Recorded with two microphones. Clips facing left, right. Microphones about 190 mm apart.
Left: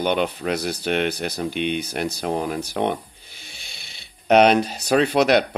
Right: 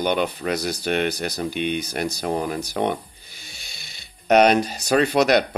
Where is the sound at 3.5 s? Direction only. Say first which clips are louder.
Left 1 dB; 40° right (ahead or behind).